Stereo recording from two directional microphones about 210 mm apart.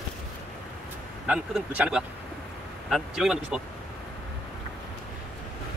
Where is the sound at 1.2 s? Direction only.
5° right (ahead or behind).